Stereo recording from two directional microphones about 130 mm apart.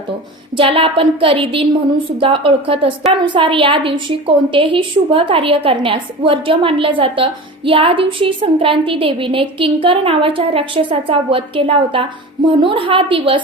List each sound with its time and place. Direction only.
0.5 s a woman's voice: 45° right (ahead or behind)